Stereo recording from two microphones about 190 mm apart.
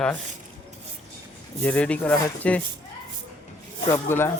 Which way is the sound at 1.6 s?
5° left (ahead or behind).